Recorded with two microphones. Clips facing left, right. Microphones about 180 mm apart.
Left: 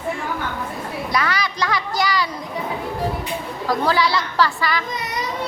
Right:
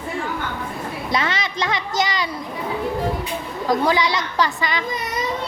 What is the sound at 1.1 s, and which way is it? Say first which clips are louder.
A child's voice: even; 25° right (ahead or behind).